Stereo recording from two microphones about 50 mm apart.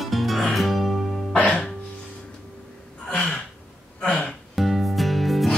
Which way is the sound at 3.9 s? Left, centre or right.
Centre.